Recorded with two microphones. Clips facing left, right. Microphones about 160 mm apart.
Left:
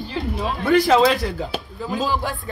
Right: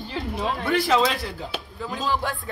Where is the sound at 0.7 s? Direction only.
40° left (ahead or behind).